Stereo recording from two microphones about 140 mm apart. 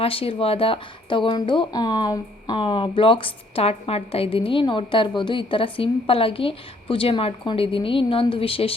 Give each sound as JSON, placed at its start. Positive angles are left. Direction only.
{"t": 0.0, "sound": "speech", "side_deg": 40}